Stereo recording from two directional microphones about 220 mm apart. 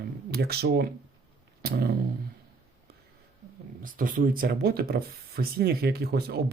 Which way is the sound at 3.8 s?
40° right (ahead or behind).